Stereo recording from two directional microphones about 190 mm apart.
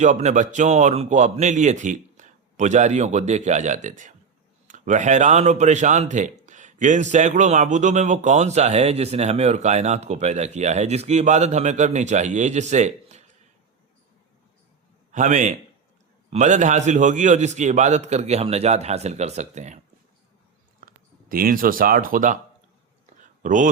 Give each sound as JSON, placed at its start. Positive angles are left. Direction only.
{"t": 0.0, "sound": "speech", "side_deg": -40}
{"t": 15.1, "sound": "a man's voice", "side_deg": -40}
{"t": 20.8, "sound": "speech", "side_deg": -50}
{"t": 23.0, "sound": "a sound", "side_deg": -40}